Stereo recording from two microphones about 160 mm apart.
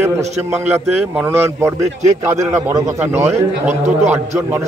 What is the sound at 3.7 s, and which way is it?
Speech, 45° right (ahead or behind).